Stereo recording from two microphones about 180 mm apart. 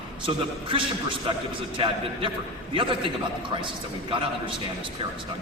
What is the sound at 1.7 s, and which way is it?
A man's voice, 25° right (ahead or behind).